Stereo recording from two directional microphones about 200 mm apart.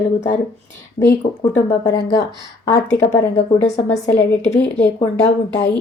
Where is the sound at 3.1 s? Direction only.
35° left (ahead or behind).